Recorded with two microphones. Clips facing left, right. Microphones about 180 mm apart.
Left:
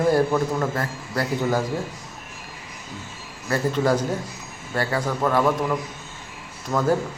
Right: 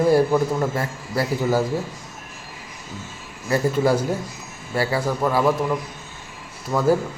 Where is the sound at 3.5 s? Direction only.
10° right (ahead or behind).